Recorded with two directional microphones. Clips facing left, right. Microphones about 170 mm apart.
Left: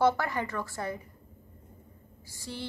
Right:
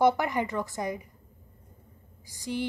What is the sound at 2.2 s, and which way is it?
Speech, 15° right (ahead or behind).